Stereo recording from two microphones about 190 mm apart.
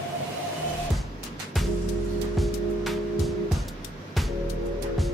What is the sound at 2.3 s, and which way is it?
Music, centre (ahead or behind).